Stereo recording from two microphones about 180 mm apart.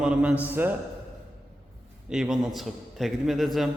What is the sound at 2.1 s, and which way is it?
A man's voice, 5° right (ahead or behind).